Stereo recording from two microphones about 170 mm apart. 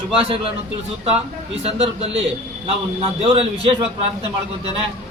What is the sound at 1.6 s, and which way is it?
A man's voice, 35° right (ahead or behind).